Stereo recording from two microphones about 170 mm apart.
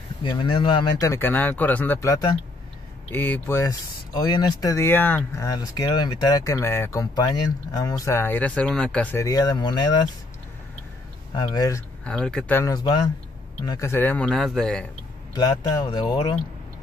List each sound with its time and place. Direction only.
0.2 s speech: 25° left (ahead or behind)
11.3 s speech: 25° left (ahead or behind)
12.0 s speech: 5° left (ahead or behind)
15.3 s speech: 20° left (ahead or behind)